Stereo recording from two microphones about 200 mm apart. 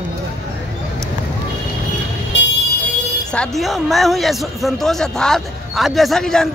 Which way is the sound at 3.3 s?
5° left (ahead or behind).